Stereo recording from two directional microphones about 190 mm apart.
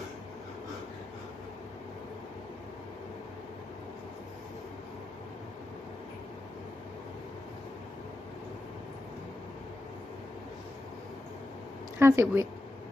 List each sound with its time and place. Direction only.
11.9 s speech: 15° right (ahead or behind)